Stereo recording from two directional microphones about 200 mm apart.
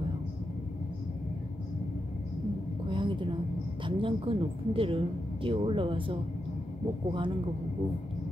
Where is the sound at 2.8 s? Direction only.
25° right (ahead or behind).